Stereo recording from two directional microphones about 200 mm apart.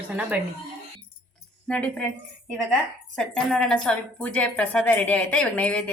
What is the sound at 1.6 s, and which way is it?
Speech, 5° left (ahead or behind).